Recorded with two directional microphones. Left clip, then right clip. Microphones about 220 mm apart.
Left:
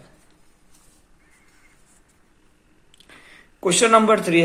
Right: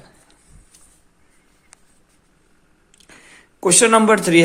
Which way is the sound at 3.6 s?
25° right (ahead or behind).